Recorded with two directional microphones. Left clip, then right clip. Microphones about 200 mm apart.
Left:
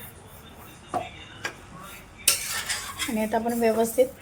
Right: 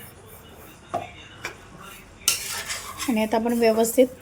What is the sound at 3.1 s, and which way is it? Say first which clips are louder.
Speech: right 3 dB; 35° right (ahead or behind).